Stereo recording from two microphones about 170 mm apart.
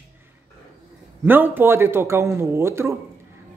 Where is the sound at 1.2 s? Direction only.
10° right (ahead or behind).